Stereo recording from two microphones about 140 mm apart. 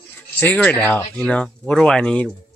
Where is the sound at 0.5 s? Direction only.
10° left (ahead or behind).